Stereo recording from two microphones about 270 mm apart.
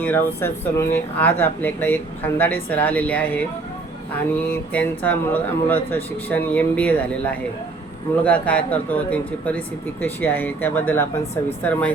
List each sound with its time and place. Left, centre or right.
0.0 s speech: centre
4.7 s speech: centre